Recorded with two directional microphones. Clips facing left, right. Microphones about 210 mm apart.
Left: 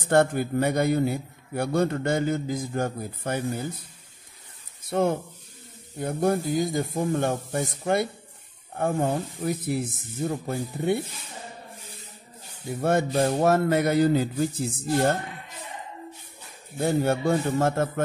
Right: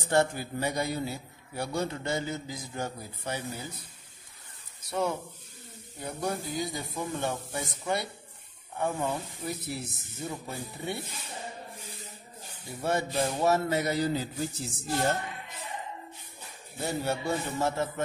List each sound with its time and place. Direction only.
0.1 s a man's voice: 55° left (ahead or behind)
4.8 s speech: 55° left (ahead or behind)
12.8 s a man's voice: 55° left (ahead or behind)
16.8 s speech: 55° left (ahead or behind)